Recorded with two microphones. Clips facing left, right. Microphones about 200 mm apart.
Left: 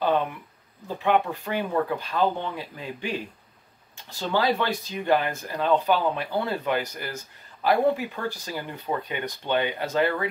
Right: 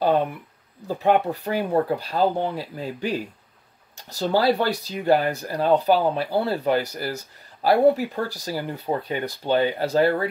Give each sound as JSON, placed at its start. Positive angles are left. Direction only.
{"t": 0.8, "sound": "speech", "side_deg": -40}